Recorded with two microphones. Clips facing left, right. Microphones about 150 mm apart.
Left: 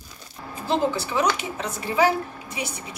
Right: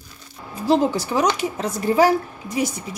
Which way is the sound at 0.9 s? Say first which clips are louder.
Right 3 dB; 40° right (ahead or behind).